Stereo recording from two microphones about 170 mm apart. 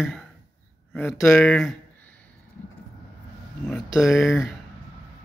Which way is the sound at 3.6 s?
Centre (ahead or behind).